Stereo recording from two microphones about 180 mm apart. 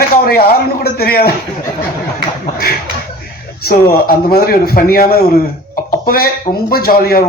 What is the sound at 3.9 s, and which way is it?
A man's voice, 55° left (ahead or behind).